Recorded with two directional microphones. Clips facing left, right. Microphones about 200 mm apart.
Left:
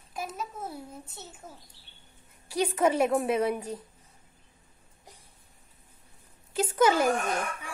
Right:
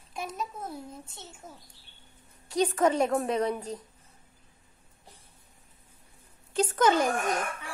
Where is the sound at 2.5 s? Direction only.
10° left (ahead or behind).